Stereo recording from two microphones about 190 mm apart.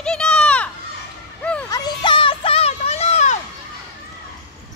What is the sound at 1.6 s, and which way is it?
Music, 20° left (ahead or behind).